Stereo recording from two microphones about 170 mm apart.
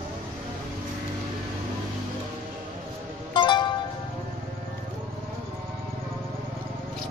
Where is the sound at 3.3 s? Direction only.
25° left (ahead or behind).